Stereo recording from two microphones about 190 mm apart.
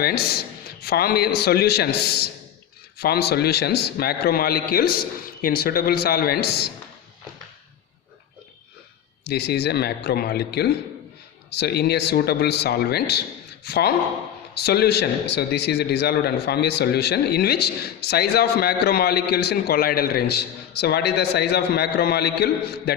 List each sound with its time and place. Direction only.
0.0 s a man's voice: 55° left (ahead or behind)
9.2 s a man's voice: 60° left (ahead or behind)